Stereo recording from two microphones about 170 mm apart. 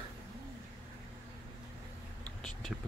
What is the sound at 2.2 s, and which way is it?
Whispering, 5° left (ahead or behind).